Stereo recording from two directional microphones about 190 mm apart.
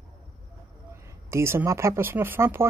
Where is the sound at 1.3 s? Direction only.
15° right (ahead or behind).